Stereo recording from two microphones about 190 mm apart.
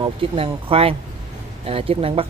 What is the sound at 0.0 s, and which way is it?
Speech, 30° right (ahead or behind).